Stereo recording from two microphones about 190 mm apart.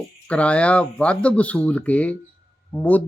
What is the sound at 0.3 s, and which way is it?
Speech, 5° left (ahead or behind).